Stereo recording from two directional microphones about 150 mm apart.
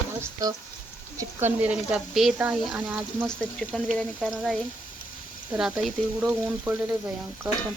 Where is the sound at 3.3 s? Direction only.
Centre (ahead or behind).